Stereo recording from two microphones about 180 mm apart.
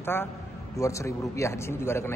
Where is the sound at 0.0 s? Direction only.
10° left (ahead or behind).